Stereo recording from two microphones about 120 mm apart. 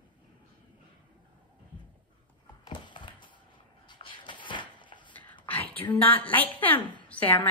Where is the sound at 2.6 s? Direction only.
40° left (ahead or behind).